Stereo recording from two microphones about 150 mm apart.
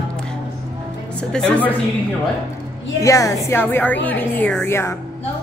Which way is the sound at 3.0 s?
20° left (ahead or behind).